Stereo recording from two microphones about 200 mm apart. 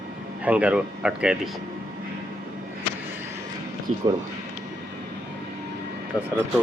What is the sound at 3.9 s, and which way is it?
Speech, 35° right (ahead or behind).